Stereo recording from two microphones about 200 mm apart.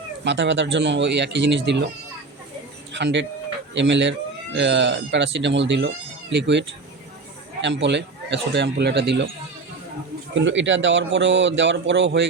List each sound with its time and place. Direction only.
0.3 s speech: 60° right (ahead or behind)
2.9 s speech: 60° right (ahead or behind)
10.3 s speech: 65° right (ahead or behind)